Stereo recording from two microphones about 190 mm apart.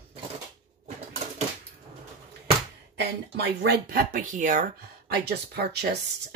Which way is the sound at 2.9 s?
60° right (ahead or behind).